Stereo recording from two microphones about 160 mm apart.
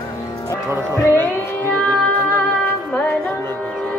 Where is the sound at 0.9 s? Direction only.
15° left (ahead or behind).